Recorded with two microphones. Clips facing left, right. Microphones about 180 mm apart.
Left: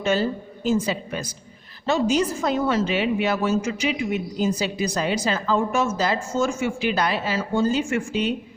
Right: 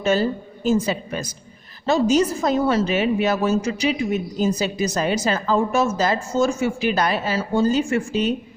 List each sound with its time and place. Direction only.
0.0 s a woman's voice: 40° right (ahead or behind)